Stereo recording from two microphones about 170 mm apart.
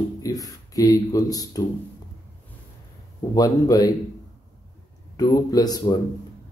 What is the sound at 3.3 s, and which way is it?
Speech, 20° left (ahead or behind).